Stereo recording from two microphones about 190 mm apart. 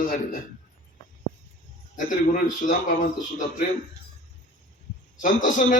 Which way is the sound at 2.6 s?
45° left (ahead or behind).